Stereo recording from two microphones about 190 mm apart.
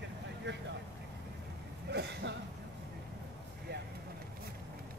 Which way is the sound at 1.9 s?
60° right (ahead or behind).